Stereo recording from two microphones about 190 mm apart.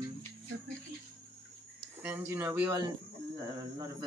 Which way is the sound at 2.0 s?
10° right (ahead or behind).